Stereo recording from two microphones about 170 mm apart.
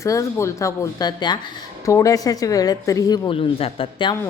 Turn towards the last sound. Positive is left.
turn(degrees=30)  # may be behind; listen again after turning